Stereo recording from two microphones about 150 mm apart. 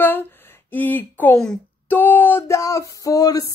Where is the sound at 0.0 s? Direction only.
15° left (ahead or behind).